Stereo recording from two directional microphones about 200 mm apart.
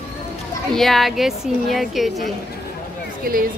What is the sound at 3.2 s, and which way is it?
Speech, 45° right (ahead or behind).